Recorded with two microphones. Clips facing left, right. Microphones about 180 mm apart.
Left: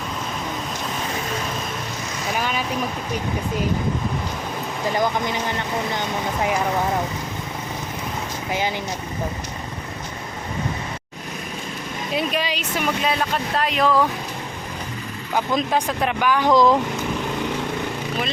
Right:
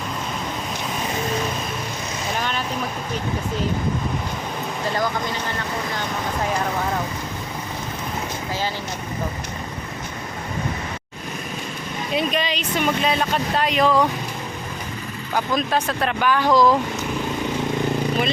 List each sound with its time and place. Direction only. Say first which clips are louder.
2.4 s boat: left 3 dB; 5° left (ahead or behind)
4.9 s speech: left 3 dB; 20° left (ahead or behind)
12.1 s speech: right 1 dB; 5° left (ahead or behind)
15.5 s speech: even; 15° left (ahead or behind)